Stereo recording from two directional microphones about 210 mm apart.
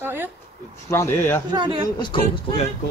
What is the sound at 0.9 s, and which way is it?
Speech, 10° left (ahead or behind).